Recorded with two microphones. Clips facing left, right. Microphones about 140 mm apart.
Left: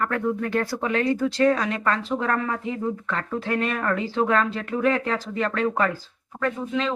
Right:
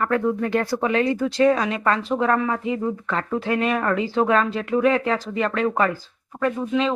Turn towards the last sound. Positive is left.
turn(degrees=-5)  # may be behind; listen again after turning